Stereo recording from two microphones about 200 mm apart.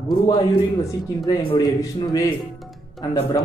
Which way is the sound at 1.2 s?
20° left (ahead or behind).